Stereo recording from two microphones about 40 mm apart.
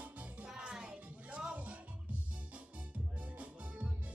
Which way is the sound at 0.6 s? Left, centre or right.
Right.